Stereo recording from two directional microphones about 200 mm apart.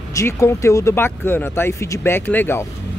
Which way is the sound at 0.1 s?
15° left (ahead or behind).